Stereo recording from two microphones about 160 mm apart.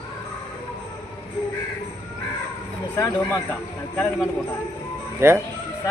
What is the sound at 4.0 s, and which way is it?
Speech, 10° left (ahead or behind).